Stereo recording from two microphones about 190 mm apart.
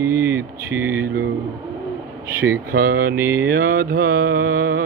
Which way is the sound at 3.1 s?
15° right (ahead or behind).